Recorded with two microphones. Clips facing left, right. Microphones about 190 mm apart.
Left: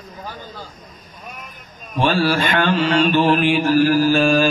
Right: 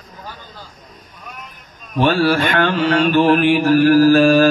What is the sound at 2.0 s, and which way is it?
Mantra, 60° right (ahead or behind).